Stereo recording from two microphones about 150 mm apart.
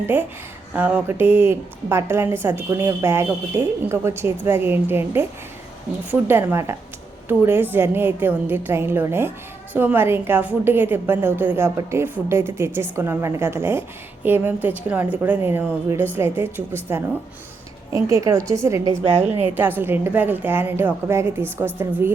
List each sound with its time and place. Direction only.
0.1 s a woman's voice: 15° right (ahead or behind)